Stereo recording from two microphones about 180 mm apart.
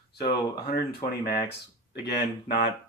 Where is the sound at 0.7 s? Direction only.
55° left (ahead or behind).